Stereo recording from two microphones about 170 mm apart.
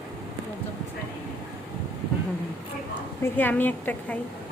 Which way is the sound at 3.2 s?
10° left (ahead or behind).